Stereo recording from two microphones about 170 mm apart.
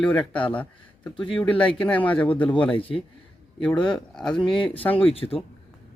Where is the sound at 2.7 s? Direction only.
30° left (ahead or behind).